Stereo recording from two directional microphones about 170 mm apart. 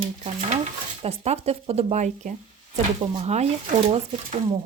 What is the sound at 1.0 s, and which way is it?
Speech, 40° right (ahead or behind).